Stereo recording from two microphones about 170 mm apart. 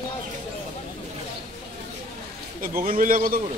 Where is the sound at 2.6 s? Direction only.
55° right (ahead or behind).